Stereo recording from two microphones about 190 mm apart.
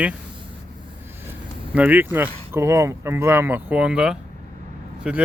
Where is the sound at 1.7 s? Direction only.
10° right (ahead or behind).